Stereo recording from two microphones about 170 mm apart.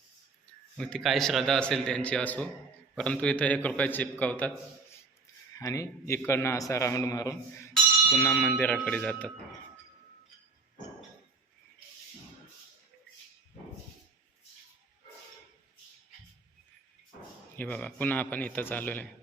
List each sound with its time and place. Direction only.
0.8 s a man's voice: 5° left (ahead or behind); by 7.3 s 20° left (ahead or behind)
7.7 s speech: 5° left (ahead or behind)
17.6 s a man's voice: 10° left (ahead or behind)